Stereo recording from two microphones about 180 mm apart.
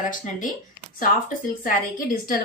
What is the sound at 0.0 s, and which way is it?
A woman's voice, 45° left (ahead or behind).